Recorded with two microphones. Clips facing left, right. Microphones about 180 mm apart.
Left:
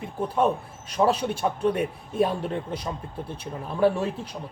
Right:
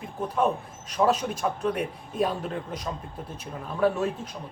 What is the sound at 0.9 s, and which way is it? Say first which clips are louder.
A man's voice: left 1 dB; 30° left (ahead or behind).